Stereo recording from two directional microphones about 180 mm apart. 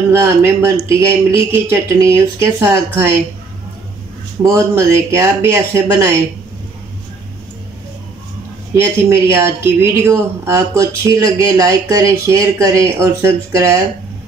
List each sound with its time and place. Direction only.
0.1 s speech: 15° right (ahead or behind)
4.4 s speech: 15° right (ahead or behind)
8.7 s speech: 15° right (ahead or behind)